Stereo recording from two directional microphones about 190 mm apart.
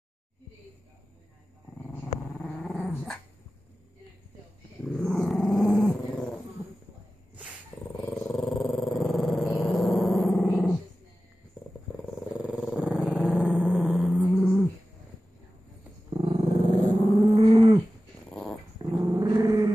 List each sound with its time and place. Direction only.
2.3 s dog: 5° left (ahead or behind)
4.8 s dog: centre (ahead or behind)
8.0 s dog: 5° left (ahead or behind)
12.4 s dog: 5° right (ahead or behind)
16.1 s dog: 30° right (ahead or behind)
17.2 s livestock: 20° right (ahead or behind)
18.3 s dog: 5° left (ahead or behind)
18.8 s dog: 20° right (ahead or behind)